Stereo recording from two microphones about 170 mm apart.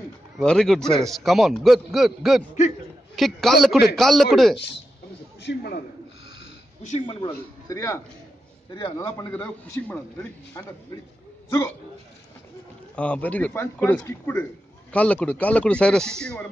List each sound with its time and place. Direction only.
0.4 s a man's voice: 5° left (ahead or behind)
5.4 s a man's voice: 80° left
7.1 s a man's voice: 30° left (ahead or behind)
9.3 s a man's voice: 10° left (ahead or behind)
12.9 s a man's voice: 5° left (ahead or behind)